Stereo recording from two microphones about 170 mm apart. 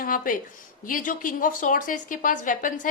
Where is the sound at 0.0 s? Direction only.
55° left (ahead or behind).